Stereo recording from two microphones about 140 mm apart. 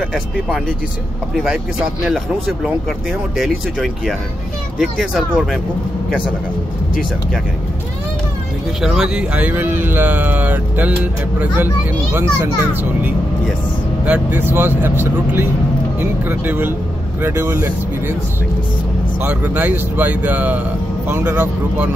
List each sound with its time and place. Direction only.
1.3 s speech: 5° right (ahead or behind)
8.8 s speech: 5° right (ahead or behind)
14.0 s speech: 10° right (ahead or behind)
19.2 s speech: 10° right (ahead or behind)